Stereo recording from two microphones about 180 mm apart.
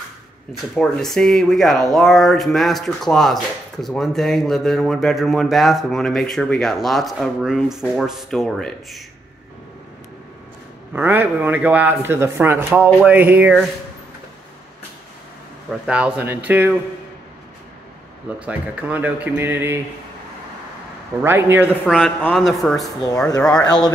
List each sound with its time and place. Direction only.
0.7 s speech: 5° left (ahead or behind)
10.9 s speech: 10° right (ahead or behind)
15.7 s speech: 5° right (ahead or behind)
18.4 s speech: 10° right (ahead or behind)
21.2 s speech: 15° right (ahead or behind)
21.8 s speech: centre (ahead or behind)